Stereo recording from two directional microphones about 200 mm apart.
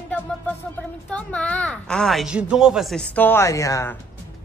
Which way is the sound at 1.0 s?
5° left (ahead or behind).